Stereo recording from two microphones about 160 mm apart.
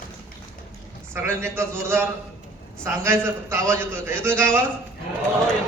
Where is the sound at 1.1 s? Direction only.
15° right (ahead or behind).